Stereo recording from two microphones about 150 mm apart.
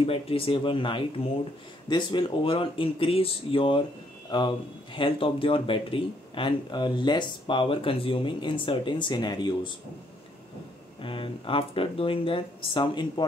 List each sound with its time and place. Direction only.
0.0 s speech: 40° left (ahead or behind)
11.0 s speech: 35° left (ahead or behind)